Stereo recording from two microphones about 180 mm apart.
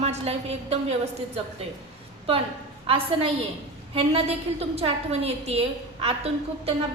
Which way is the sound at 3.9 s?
35° right (ahead or behind).